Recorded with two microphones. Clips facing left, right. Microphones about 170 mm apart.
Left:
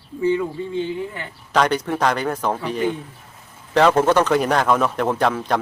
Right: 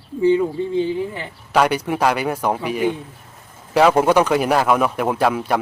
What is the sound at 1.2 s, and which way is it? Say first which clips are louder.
A man's voice: even; 10° right (ahead or behind).